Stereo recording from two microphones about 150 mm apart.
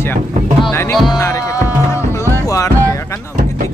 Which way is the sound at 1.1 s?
20° left (ahead or behind).